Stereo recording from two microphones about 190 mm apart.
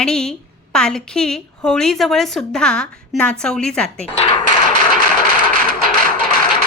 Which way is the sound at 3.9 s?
30° left (ahead or behind).